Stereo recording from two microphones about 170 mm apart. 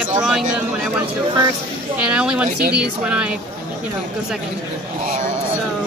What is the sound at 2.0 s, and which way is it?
Speech, 5° right (ahead or behind).